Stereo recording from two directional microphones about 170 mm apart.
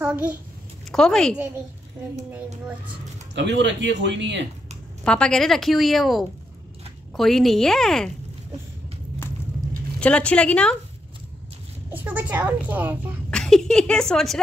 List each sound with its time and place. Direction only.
0.0 s a child's voice: 10° right (ahead or behind)
0.9 s a woman's voice: 5° left (ahead or behind)
3.3 s speech: 90° right
5.0 s a woman's voice: 5° left (ahead or behind)
9.9 s a woman's voice: 5° left (ahead or behind)
11.9 s a woman's voice: 10° right (ahead or behind)
13.3 s a woman's voice: 5° left (ahead or behind)